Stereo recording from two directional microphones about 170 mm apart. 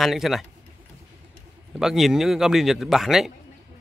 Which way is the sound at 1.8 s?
Centre (ahead or behind).